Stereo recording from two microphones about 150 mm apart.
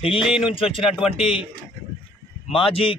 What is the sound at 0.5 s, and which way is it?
Speech, 35° left (ahead or behind).